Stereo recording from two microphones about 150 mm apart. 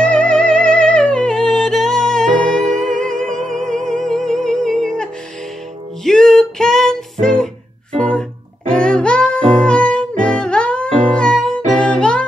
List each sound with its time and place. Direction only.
0.0 s music: 5° left (ahead or behind)
2.6 s music: 55° right (ahead or behind)
4.0 s music: 5° left (ahead or behind)